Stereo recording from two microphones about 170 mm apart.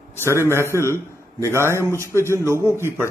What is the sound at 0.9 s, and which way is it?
Speech, 15° left (ahead or behind).